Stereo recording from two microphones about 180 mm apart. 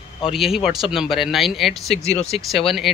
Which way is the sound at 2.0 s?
35° left (ahead or behind).